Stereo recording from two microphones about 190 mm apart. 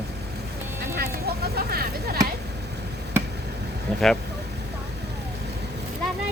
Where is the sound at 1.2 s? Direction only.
55° right (ahead or behind).